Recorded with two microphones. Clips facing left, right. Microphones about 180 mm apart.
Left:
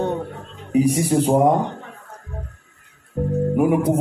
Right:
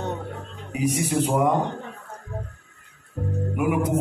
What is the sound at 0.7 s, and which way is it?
Speech, 35° left (ahead or behind).